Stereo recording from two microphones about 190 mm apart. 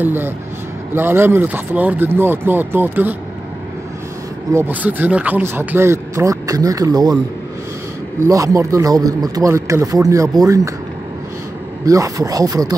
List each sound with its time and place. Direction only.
0.0 s speech: 10° right (ahead or behind)
4.5 s speech: 10° right (ahead or behind)
8.2 s speech: 15° right (ahead or behind)
11.8 s speech: 15° right (ahead or behind)